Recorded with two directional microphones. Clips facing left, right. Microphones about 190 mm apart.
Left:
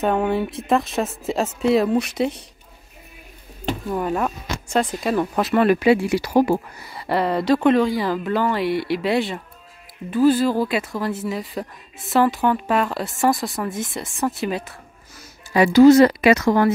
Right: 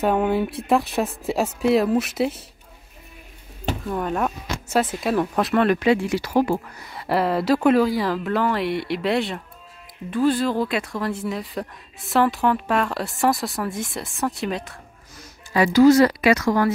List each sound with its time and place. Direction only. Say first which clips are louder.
0.0 s speech: even; 5° right (ahead or behind)
3.9 s speech: left 1 dB; 5° left (ahead or behind)
6.9 s speech: even; centre (ahead or behind)
15.5 s a woman's voice: left 3 dB; 20° left (ahead or behind)